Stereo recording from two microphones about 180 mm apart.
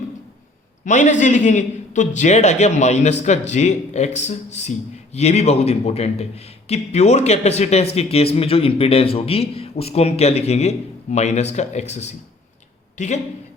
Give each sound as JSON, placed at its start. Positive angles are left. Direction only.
{"t": 0.9, "sound": "a man's voice", "side_deg": 45}